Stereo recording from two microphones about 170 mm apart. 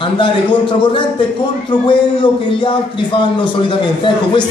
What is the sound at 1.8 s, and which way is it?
A man's voice, 30° left (ahead or behind).